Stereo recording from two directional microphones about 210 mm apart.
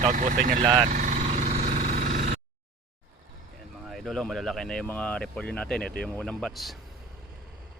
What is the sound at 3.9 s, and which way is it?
Speech, centre (ahead or behind).